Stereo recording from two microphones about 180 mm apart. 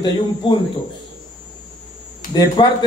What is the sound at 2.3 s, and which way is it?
Speech, 25° left (ahead or behind).